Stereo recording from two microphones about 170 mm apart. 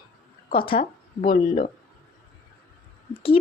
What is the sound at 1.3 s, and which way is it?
Speech, 50° left (ahead or behind).